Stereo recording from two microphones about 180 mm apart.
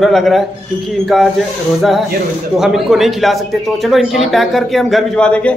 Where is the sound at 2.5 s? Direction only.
Centre (ahead or behind).